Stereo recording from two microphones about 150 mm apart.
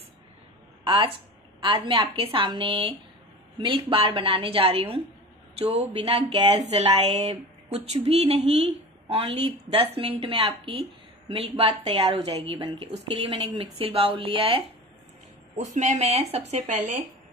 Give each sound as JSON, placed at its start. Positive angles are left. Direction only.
{"t": 0.8, "sound": "speech", "side_deg": -35}
{"t": 15.5, "sound": "speech", "side_deg": -55}